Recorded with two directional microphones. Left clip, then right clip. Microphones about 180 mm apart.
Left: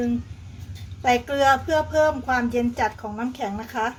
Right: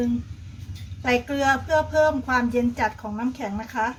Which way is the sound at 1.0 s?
25° left (ahead or behind).